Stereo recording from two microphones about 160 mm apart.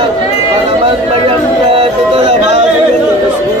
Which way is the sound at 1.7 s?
40° right (ahead or behind).